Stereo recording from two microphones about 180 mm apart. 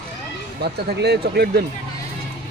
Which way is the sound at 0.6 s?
65° right (ahead or behind).